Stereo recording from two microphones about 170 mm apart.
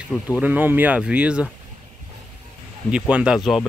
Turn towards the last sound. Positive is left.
turn(degrees=-5)  # may be behind; listen again after turning